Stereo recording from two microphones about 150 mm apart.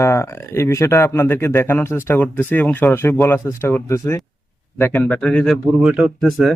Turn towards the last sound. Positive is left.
turn(degrees=0)  # may be behind; listen again after turning